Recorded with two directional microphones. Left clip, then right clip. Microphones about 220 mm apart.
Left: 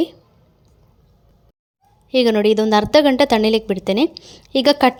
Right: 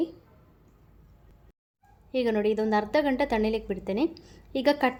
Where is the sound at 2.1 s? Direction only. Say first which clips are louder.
Left 11 dB; 35° left (ahead or behind).